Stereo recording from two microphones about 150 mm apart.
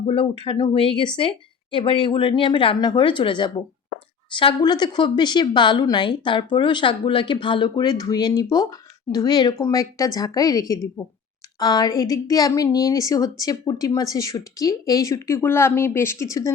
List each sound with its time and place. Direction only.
0.0 s speech: 35° left (ahead or behind); by 16.5 s 20° left (ahead or behind)